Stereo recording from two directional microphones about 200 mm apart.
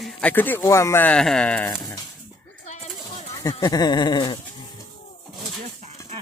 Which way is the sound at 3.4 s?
15° left (ahead or behind).